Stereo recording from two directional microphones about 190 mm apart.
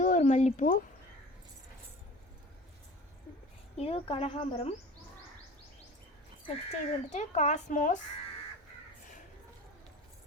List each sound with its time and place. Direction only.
0.0 s a sound: 40° left (ahead or behind)
3.8 s speech: 30° left (ahead or behind)
6.7 s speech: 35° left (ahead or behind)